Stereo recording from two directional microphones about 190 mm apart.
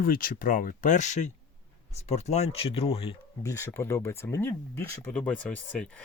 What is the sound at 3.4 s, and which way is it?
Speech, 15° left (ahead or behind).